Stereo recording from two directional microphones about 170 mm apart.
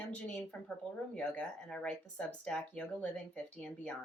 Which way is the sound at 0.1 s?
5° left (ahead or behind).